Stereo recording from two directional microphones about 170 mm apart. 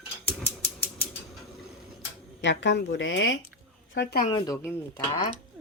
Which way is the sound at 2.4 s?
90° left.